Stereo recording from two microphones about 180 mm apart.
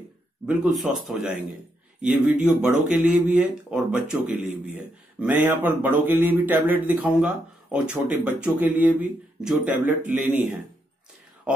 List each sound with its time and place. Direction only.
0.5 s speech: centre (ahead or behind)